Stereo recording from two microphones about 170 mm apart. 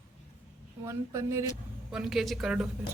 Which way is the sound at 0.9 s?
15° right (ahead or behind).